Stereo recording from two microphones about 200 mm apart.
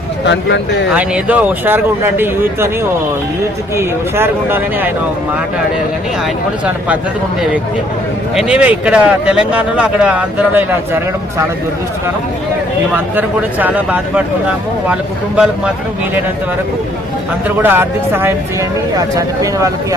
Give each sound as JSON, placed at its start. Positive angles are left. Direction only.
{"t": 0.3, "sound": "speech", "side_deg": 65}
{"t": 0.9, "sound": "speech", "side_deg": -5}
{"t": 3.8, "sound": "speech", "side_deg": -10}
{"t": 6.7, "sound": "speech", "side_deg": -5}
{"t": 8.4, "sound": "speech", "side_deg": -5}
{"t": 13.1, "sound": "speech", "side_deg": -10}
{"t": 17.6, "sound": "speech", "side_deg": -10}